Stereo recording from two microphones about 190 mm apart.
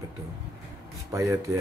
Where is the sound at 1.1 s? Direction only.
15° right (ahead or behind).